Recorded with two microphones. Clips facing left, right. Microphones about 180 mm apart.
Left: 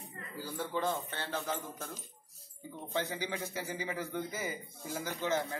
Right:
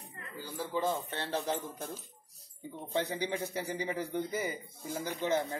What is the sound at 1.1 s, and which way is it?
Speech, 30° right (ahead or behind).